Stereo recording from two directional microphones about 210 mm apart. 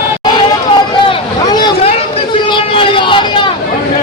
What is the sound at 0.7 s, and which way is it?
Vehicle, 20° left (ahead or behind).